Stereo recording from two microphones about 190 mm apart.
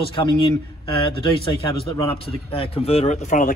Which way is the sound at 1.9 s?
25° left (ahead or behind).